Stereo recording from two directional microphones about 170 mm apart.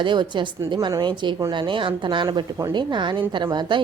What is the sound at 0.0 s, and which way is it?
A woman's voice, 30° right (ahead or behind).